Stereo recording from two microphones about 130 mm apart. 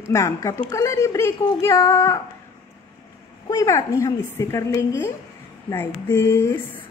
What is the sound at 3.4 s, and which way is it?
A woman's voice, 25° left (ahead or behind).